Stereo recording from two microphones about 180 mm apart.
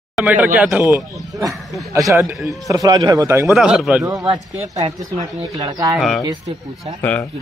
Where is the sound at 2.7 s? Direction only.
20° right (ahead or behind).